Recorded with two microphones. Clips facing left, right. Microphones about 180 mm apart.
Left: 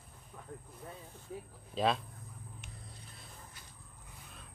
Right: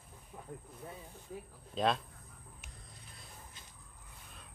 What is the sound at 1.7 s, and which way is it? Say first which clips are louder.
Speech: left 1 dB; centre (ahead or behind).